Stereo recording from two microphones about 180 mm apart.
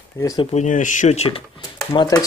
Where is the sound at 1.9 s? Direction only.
20° left (ahead or behind).